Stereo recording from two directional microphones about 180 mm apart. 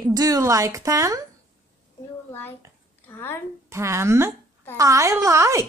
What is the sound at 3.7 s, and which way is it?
Speech, 15° right (ahead or behind).